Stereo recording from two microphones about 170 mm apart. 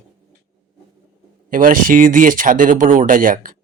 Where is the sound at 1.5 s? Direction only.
55° right (ahead or behind).